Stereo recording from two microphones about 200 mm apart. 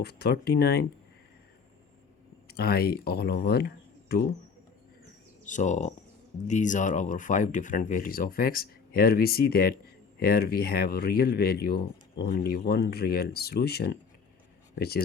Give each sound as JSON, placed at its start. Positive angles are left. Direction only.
{"t": 0.0, "sound": "speech", "side_deg": 55}
{"t": 2.5, "sound": "speech", "side_deg": 50}
{"t": 5.5, "sound": "speech", "side_deg": 40}